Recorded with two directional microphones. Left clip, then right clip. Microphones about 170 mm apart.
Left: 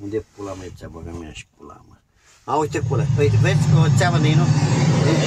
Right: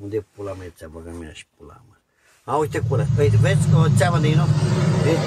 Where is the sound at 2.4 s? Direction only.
5° left (ahead or behind).